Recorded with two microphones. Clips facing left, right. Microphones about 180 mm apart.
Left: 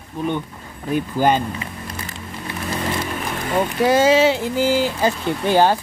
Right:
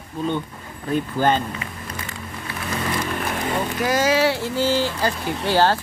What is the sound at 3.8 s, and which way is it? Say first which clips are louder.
Speech: left 5 dB; 25° left (ahead or behind).